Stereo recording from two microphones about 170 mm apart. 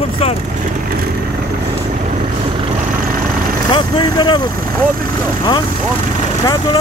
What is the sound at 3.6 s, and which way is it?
Speech, 25° left (ahead or behind).